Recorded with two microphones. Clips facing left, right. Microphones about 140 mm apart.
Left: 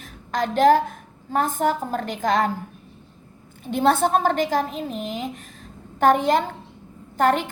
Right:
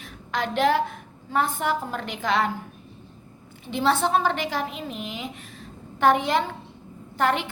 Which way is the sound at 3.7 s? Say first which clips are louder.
Left 3 dB; 50° left (ahead or behind).